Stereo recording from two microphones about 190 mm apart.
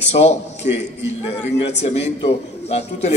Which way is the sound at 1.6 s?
35° left (ahead or behind).